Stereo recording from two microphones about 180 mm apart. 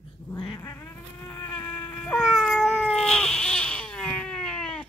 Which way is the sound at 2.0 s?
Centre (ahead or behind).